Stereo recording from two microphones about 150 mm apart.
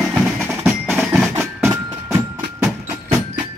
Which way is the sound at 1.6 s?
20° right (ahead or behind).